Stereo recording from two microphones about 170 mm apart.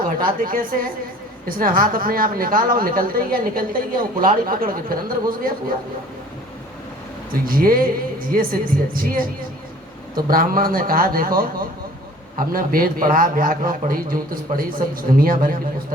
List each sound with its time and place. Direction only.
0.0 s a woman's voice: 55° right (ahead or behind)
7.3 s a woman's voice: 60° right (ahead or behind)